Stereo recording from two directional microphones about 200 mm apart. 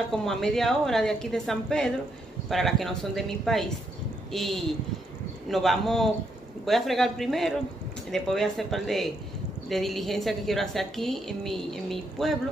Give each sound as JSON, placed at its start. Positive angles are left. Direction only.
{"t": 0.1, "sound": "a woman's voice", "side_deg": 0}